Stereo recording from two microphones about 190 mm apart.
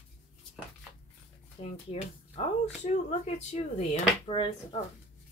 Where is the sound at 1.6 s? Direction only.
30° left (ahead or behind).